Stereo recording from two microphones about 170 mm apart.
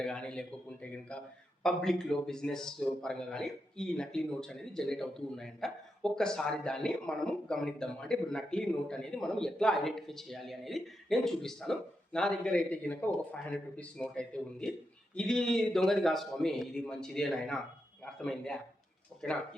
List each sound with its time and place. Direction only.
0.0 s a man's voice: 5° left (ahead or behind)